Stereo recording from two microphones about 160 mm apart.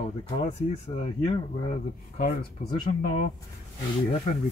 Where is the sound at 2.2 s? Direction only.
55° left (ahead or behind).